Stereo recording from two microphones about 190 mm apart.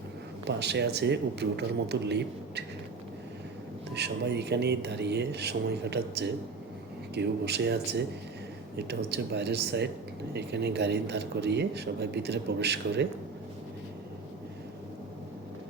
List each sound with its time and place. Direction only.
0.4 s speech: 60° right (ahead or behind)
3.9 s speech: 60° right (ahead or behind)